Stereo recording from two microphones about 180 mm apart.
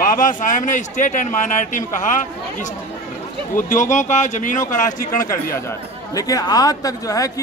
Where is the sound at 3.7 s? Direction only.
45° left (ahead or behind).